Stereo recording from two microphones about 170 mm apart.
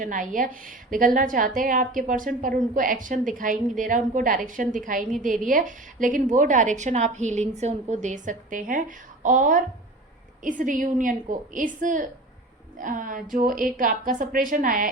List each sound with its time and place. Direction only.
0.0 s a woman's voice: 50° right (ahead or behind)